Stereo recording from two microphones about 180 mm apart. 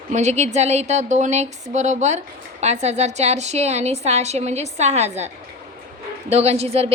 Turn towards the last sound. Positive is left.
turn(degrees=-35)  # may be behind; listen again after turning